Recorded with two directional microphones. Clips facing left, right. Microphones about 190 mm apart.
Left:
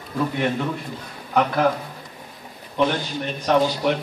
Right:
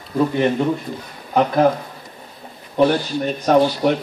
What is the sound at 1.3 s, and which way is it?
Speech, 35° right (ahead or behind).